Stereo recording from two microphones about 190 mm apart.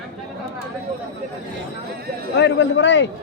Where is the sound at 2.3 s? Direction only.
70° left (ahead or behind).